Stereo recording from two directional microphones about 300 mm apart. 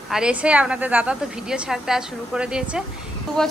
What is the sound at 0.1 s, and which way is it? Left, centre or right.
A woman's voice, centre.